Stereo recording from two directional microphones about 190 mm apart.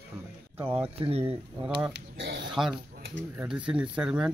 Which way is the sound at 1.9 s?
65° right (ahead or behind).